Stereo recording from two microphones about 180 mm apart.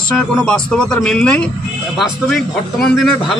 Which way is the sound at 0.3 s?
5° left (ahead or behind).